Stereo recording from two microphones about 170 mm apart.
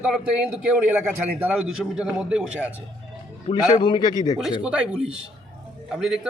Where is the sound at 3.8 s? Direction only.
25° left (ahead or behind).